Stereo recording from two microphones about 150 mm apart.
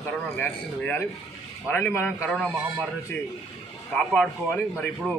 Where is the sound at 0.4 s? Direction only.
15° left (ahead or behind).